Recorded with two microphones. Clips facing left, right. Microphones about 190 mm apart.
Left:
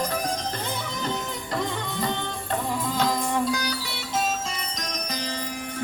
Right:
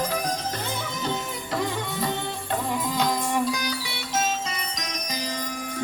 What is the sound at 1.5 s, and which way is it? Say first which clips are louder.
Music: right 2 dB; 5° right (ahead or behind).